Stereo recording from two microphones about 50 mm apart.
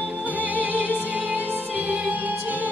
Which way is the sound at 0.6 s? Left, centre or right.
Right.